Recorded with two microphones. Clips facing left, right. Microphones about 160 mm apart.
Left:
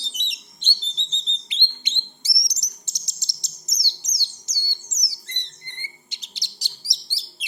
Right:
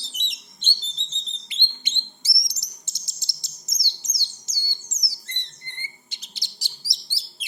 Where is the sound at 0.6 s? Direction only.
20° left (ahead or behind).